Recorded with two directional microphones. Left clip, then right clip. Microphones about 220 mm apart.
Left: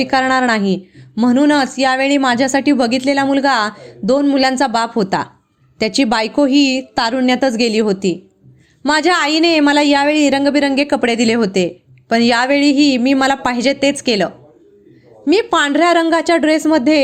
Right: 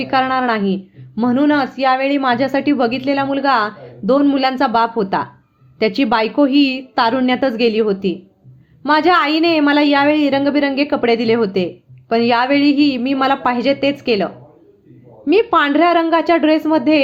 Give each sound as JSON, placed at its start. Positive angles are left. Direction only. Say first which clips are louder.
{"t": 0.0, "sound": "a woman's voice", "louder": "left 2 dB", "side_deg": 35}